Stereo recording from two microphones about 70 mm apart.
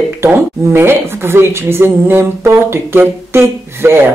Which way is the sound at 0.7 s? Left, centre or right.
Right.